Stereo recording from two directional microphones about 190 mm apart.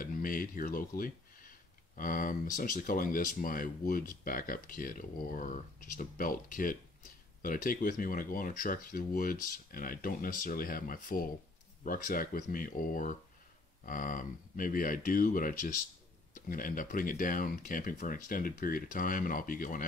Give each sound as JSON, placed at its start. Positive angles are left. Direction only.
{"t": 0.0, "sound": "speech", "side_deg": 45}